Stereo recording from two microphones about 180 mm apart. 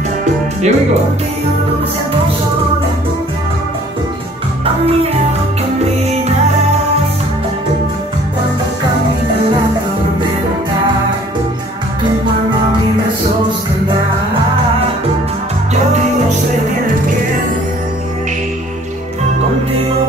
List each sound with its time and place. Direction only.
0.2 s music: 40° right (ahead or behind)